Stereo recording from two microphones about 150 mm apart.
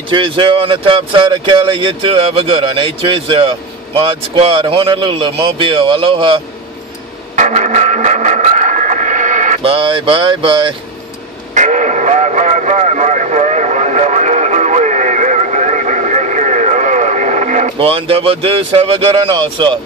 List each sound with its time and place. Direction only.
0.1 s speech: 35° right (ahead or behind)
7.3 s a sound: 55° right (ahead or behind)
9.6 s speech: 35° right (ahead or behind)
11.5 s radio: 55° right (ahead or behind)
17.7 s speech: 40° right (ahead or behind)